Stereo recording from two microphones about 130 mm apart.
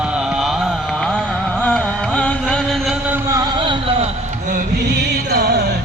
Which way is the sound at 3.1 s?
25° right (ahead or behind).